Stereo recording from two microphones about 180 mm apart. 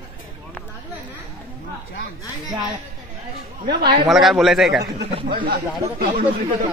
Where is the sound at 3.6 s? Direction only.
65° right (ahead or behind).